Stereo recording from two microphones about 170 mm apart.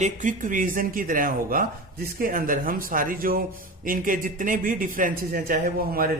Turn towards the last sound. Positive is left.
turn(degrees=-60)  # may be behind; listen again after turning